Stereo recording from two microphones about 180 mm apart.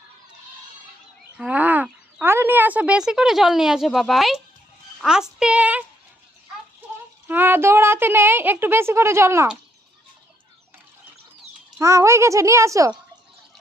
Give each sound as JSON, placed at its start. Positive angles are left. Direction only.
{"t": 1.4, "sound": "speech", "side_deg": -5}
{"t": 7.3, "sound": "a woman's voice", "side_deg": -10}
{"t": 11.8, "sound": "a woman's voice", "side_deg": -15}